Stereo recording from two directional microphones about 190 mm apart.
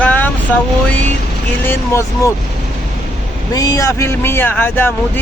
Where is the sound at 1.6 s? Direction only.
10° left (ahead or behind).